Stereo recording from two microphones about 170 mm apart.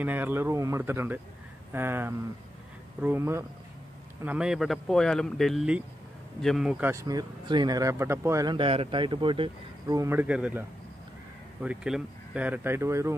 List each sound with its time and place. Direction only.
0.0 s speech: 10° right (ahead or behind)
11.6 s speech: 5° right (ahead or behind)